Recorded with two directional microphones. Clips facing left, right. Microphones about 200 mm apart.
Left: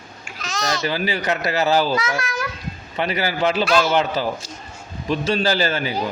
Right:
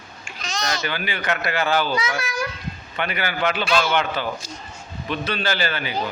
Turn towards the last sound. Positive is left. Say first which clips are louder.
# left 4 dB
turn(degrees=40)  # may be behind; listen again after turning